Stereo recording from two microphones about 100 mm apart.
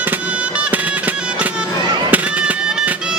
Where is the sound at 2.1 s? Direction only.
15° right (ahead or behind).